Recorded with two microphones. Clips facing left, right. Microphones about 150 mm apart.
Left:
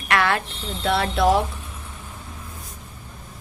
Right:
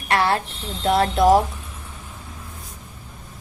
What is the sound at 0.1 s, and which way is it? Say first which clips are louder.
A woman's voice: right 1 dB; 30° right (ahead or behind).